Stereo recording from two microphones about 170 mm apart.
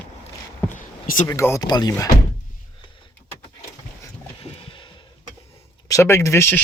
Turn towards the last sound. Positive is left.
turn(degrees=15)  # may be behind; listen again after turning